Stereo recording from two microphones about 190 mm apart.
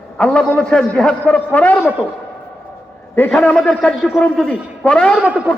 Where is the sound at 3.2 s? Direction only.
10° left (ahead or behind).